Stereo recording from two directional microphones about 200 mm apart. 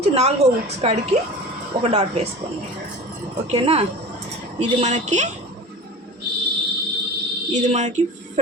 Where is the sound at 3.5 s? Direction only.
30° right (ahead or behind).